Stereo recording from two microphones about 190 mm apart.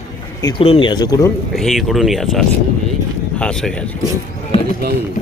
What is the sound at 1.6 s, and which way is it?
Speech, centre (ahead or behind).